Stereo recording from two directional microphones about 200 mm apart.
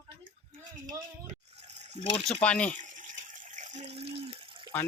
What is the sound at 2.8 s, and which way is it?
Water, 40° right (ahead or behind).